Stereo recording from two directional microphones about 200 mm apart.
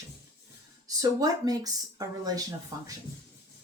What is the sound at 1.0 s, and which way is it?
A woman's voice, 20° right (ahead or behind).